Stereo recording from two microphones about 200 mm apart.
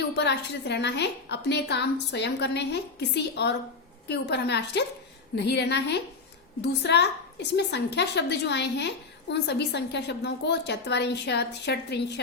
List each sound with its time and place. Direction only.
0.2 s a woman's voice: 60° left (ahead or behind)